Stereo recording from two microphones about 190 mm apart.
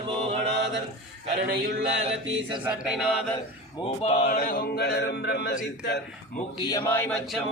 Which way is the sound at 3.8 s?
35° left (ahead or behind).